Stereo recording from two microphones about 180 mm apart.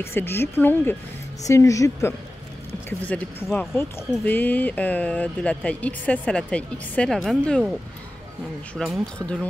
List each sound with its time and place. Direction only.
0.0 s speech: 15° left (ahead or behind)
8.7 s speech: centre (ahead or behind)